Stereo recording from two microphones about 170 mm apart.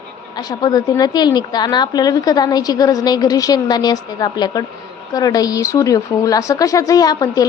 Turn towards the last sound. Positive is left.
turn(degrees=20)  # may be behind; listen again after turning